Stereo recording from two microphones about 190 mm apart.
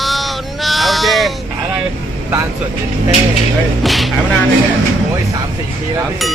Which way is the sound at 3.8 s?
Centre (ahead or behind).